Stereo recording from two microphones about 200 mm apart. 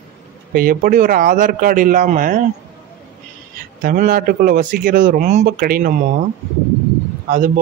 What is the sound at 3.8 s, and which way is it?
Speech, 45° right (ahead or behind).